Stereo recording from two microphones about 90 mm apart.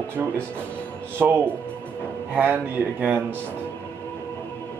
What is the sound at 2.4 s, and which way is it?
Speech, 20° right (ahead or behind).